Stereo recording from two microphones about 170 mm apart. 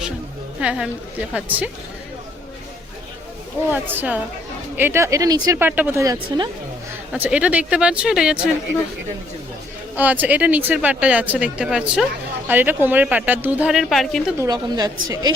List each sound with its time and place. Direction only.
0.6 s speech: 5° right (ahead or behind)
3.7 s speech: 10° right (ahead or behind)
6.1 s a woman's voice: 25° right (ahead or behind)
7.1 s speech: 5° right (ahead or behind)
9.9 s speech: 10° right (ahead or behind)
14.3 s a woman's voice: 20° right (ahead or behind)